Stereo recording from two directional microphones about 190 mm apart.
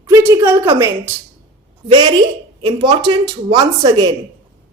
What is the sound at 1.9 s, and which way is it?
Speech, 20° right (ahead or behind).